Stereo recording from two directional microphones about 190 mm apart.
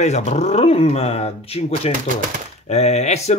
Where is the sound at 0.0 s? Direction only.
35° left (ahead or behind).